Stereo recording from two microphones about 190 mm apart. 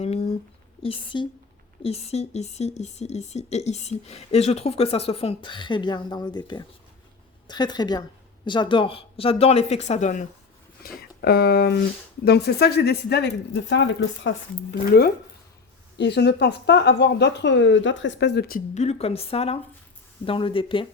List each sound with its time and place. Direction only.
0.0 s a sound: 35° left (ahead or behind)
0.8 s a woman's voice: 25° left (ahead or behind)
10.8 s speech: 55° left (ahead or behind)
18.7 s a woman's voice: 35° left (ahead or behind)